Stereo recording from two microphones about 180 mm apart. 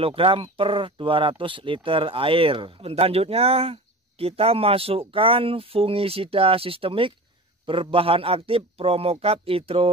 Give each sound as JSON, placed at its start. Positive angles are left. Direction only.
{"t": 0.0, "sound": "speech", "side_deg": -30}